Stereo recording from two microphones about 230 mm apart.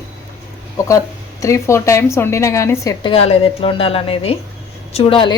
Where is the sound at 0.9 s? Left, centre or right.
Centre.